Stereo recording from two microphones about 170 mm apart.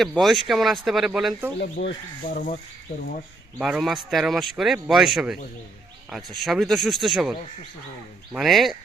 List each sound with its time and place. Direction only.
0.0 s speech: centre (ahead or behind)
1.5 s speech: 70° left (ahead or behind)
2.2 s speech: 50° left (ahead or behind)
3.6 s speech: centre (ahead or behind)